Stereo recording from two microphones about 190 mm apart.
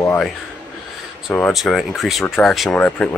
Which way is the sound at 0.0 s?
10° left (ahead or behind).